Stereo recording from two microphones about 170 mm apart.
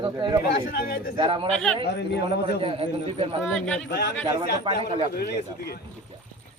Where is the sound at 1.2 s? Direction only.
30° right (ahead or behind).